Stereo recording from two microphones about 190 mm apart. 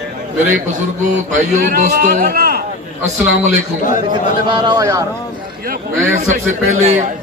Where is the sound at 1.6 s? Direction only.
45° right (ahead or behind).